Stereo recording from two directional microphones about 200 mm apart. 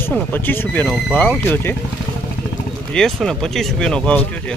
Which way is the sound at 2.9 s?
5° left (ahead or behind).